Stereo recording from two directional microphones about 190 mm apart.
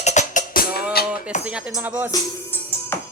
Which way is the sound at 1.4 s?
5° right (ahead or behind).